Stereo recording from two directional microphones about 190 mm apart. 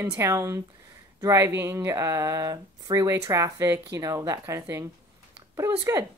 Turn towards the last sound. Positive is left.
turn(degrees=-15)  # may be behind; listen again after turning